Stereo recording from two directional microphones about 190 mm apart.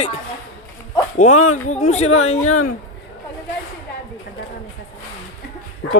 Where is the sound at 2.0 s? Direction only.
90° left.